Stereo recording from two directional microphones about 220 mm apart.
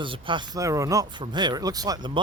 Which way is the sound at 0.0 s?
20° right (ahead or behind).